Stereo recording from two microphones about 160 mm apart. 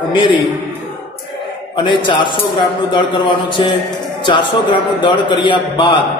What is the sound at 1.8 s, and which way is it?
Speech, 30° left (ahead or behind).